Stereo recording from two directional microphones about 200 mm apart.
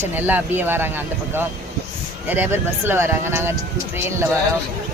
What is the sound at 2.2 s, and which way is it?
Speech, 10° right (ahead or behind).